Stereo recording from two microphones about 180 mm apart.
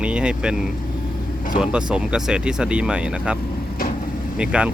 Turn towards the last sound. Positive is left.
turn(degrees=-5)  # may be behind; listen again after turning